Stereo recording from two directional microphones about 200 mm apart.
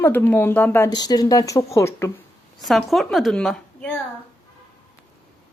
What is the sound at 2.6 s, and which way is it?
A woman's voice, centre (ahead or behind).